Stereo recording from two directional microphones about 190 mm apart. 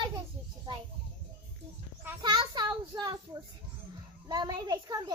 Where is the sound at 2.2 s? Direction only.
25° right (ahead or behind).